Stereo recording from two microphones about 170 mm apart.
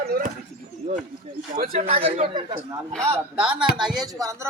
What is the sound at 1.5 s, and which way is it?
Speech, 50° right (ahead or behind).